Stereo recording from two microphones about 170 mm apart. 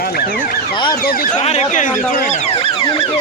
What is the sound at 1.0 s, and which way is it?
Speech, 60° left (ahead or behind).